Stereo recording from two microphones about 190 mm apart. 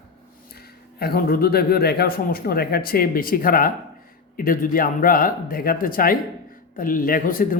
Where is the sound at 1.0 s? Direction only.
55° left (ahead or behind).